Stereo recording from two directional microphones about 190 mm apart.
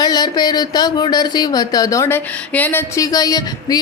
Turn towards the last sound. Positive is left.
turn(degrees=20)  # may be behind; listen again after turning